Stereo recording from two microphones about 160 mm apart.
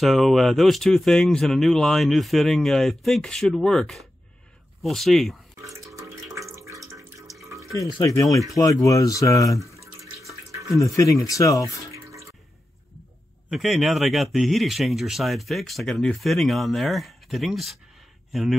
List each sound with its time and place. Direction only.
0.0 s speech: centre (ahead or behind)
5.9 s water: 20° right (ahead or behind)
7.7 s speech: 20° left (ahead or behind)
11.0 s speech: 20° left (ahead or behind)
11.9 s bathtub: 20° right (ahead or behind)
13.5 s speech: centre (ahead or behind)